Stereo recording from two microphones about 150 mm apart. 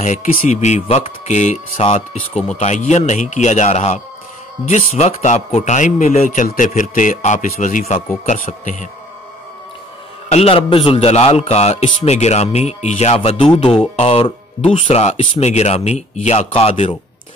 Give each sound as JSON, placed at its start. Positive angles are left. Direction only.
{"t": 0.0, "sound": "a man's voice", "side_deg": 55}
{"t": 10.3, "sound": "a man's voice", "side_deg": 40}